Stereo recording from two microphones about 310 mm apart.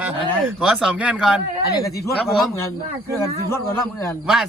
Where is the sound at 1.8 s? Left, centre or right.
Centre.